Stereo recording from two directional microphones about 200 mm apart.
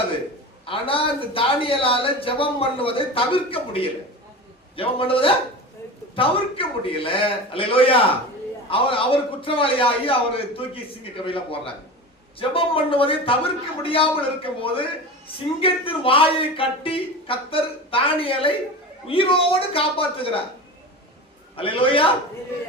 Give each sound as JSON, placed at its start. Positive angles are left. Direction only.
{"t": 0.6, "sound": "a man's voice", "side_deg": 25}
{"t": 21.5, "sound": "a man's voice", "side_deg": 25}